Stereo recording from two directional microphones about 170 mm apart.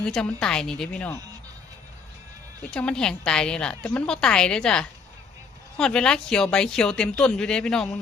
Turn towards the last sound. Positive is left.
turn(degrees=5)  # may be behind; listen again after turning